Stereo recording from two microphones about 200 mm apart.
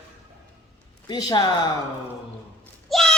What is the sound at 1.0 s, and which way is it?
Speech, 20° left (ahead or behind).